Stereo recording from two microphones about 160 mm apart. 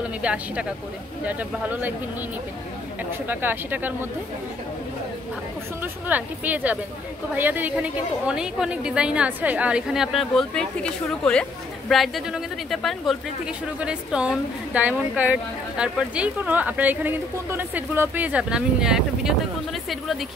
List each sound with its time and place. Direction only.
0.2 s speech: 5° right (ahead or behind)
3.3 s speech: 10° right (ahead or behind)
6.0 s a woman's voice: 10° right (ahead or behind)